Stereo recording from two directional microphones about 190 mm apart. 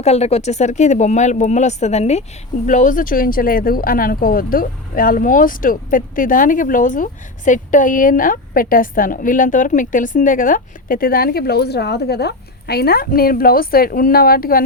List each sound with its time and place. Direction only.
0.0 s speech: 35° left (ahead or behind); by 14.6 s 50° left (ahead or behind)